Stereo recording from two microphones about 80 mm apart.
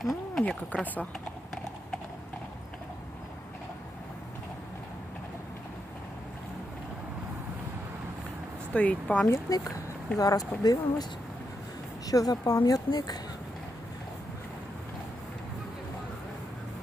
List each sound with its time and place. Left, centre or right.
0.0 s a sound: centre
0.4 s speech: centre
8.7 s speech: centre
9.2 s speech: left
12.0 s speech: left